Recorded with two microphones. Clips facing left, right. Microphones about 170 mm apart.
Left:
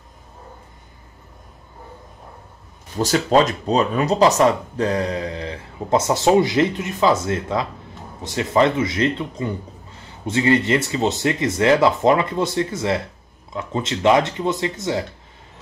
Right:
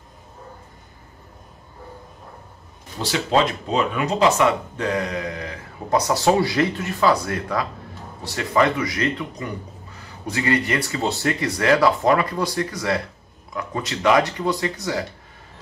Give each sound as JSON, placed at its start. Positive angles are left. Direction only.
{"t": 3.0, "sound": "speech", "side_deg": 45}